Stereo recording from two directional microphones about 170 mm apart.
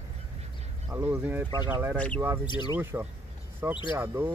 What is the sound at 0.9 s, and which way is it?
Speech, 15° right (ahead or behind).